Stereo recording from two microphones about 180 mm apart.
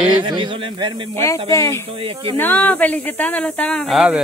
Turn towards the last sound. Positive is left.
turn(degrees=0)  # may be behind; listen again after turning